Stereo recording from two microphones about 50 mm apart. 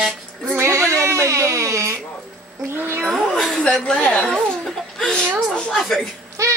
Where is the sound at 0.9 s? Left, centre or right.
Right.